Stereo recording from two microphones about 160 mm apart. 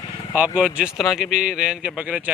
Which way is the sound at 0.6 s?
10° right (ahead or behind).